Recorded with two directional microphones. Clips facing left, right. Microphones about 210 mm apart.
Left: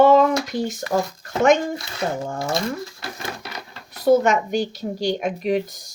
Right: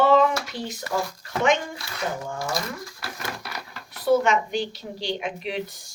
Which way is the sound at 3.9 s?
45° left (ahead or behind).